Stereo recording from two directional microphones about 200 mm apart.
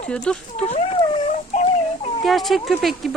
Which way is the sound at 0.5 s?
30° left (ahead or behind).